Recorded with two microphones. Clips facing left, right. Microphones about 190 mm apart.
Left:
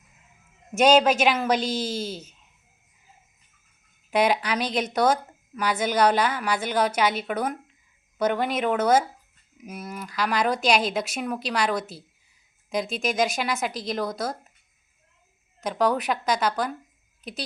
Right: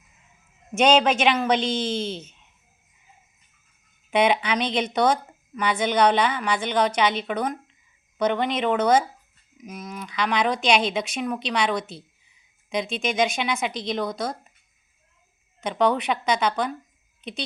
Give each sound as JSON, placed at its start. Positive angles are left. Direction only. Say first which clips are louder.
{"t": 0.8, "sound": "speech", "louder": "left 1 dB", "side_deg": 0}
{"t": 1.9, "sound": "speech", "louder": "right 3 dB", "side_deg": 40}
{"t": 4.1, "sound": "speech", "louder": "right 1 dB", "side_deg": 0}
{"t": 15.6, "sound": "speech", "louder": "right 1 dB", "side_deg": 0}